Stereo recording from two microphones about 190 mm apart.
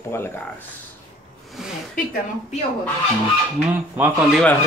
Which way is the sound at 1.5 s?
Centre (ahead or behind).